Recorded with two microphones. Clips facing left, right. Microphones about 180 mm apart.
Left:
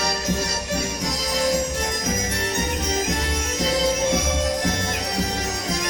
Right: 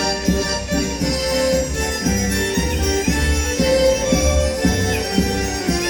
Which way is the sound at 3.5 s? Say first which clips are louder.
Right 8 dB; 65° right (ahead or behind).